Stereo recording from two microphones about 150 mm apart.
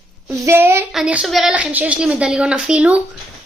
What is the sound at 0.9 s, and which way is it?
A woman's voice, 5° right (ahead or behind).